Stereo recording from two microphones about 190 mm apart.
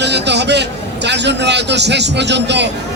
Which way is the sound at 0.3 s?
65° right (ahead or behind).